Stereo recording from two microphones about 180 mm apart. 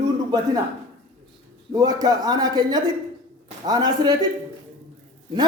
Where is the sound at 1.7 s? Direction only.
20° right (ahead or behind).